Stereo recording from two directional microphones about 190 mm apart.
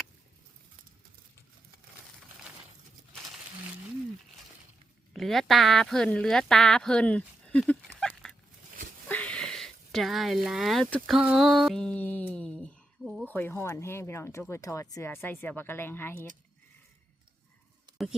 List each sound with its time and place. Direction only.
5.1 s speech: centre (ahead or behind)